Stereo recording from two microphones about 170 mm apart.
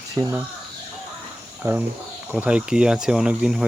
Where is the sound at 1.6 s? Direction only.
15° right (ahead or behind).